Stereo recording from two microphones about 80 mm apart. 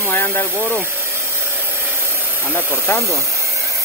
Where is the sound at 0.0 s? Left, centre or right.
Left.